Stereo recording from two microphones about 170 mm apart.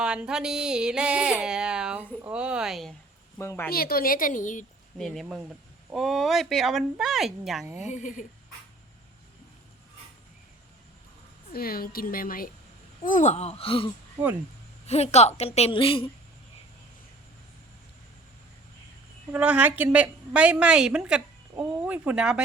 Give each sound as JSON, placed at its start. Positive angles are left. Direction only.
{"t": 0.0, "sound": "a sound", "side_deg": -5}
{"t": 3.3, "sound": "speech", "side_deg": 15}
{"t": 3.7, "sound": "a woman's voice", "side_deg": 60}
{"t": 4.9, "sound": "a sound", "side_deg": 0}
{"t": 7.6, "sound": "a woman's voice", "side_deg": -15}
{"t": 7.9, "sound": "a woman's voice", "side_deg": 45}
{"t": 11.5, "sound": "a woman's voice", "side_deg": 60}
{"t": 19.3, "sound": "a woman's voice", "side_deg": -10}
{"t": 21.6, "sound": "a sound", "side_deg": -5}